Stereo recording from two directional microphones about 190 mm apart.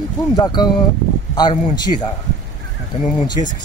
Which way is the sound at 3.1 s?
25° left (ahead or behind).